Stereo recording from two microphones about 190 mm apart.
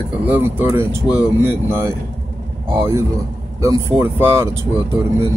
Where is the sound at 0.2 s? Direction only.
10° right (ahead or behind).